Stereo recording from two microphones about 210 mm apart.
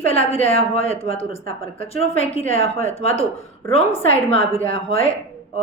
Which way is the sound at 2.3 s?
30° left (ahead or behind).